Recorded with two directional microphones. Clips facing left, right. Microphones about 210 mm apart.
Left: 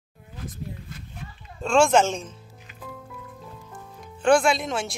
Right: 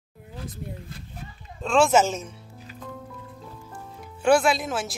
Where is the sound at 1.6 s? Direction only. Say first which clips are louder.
Left 1 dB; centre (ahead or behind).